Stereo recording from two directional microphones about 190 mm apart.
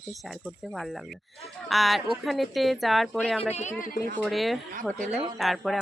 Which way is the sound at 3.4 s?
35° left (ahead or behind).